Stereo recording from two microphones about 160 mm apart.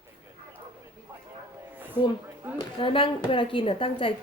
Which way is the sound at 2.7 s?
35° left (ahead or behind).